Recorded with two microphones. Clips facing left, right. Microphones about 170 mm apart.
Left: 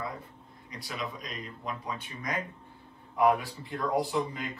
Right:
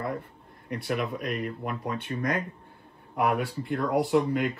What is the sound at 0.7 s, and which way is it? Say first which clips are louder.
A man's voice: right 8 dB; 60° right (ahead or behind).